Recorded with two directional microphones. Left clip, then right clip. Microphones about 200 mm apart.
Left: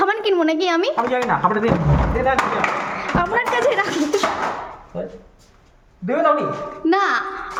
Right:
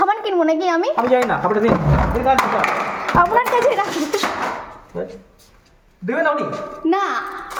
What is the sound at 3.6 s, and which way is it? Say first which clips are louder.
Speech: right 1 dB; 10° left (ahead or behind).